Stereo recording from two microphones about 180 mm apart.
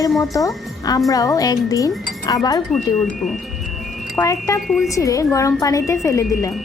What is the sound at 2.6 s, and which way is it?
Speech, centre (ahead or behind).